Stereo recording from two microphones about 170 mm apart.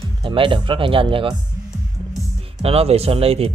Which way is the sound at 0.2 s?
30° right (ahead or behind).